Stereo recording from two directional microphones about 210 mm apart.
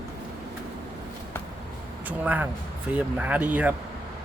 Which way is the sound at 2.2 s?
10° right (ahead or behind).